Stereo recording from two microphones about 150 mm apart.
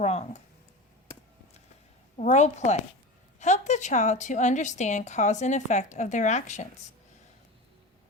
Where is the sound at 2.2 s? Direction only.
50° left (ahead or behind).